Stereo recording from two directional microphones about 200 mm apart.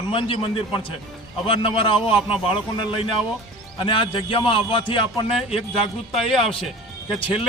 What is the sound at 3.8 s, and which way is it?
A man's voice, 25° left (ahead or behind).